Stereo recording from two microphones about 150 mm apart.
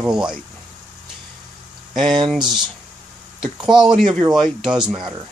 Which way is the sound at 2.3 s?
Centre (ahead or behind).